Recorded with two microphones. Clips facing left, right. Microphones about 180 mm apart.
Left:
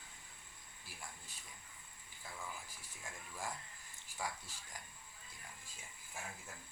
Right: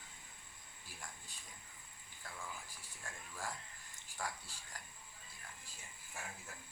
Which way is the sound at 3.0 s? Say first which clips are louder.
Left 1 dB; 10° left (ahead or behind).